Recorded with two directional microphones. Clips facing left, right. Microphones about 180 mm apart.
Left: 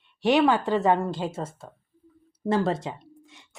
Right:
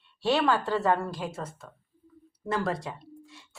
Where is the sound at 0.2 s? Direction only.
20° left (ahead or behind).